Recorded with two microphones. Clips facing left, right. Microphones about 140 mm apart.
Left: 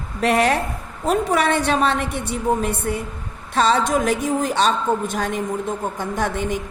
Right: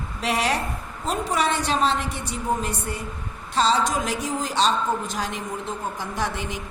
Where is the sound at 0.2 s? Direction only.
55° left (ahead or behind).